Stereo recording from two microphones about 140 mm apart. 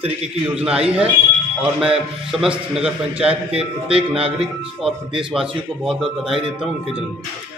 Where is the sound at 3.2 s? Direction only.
45° right (ahead or behind).